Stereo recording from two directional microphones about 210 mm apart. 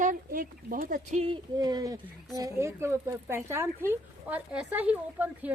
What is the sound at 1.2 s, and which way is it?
Speech, 20° right (ahead or behind).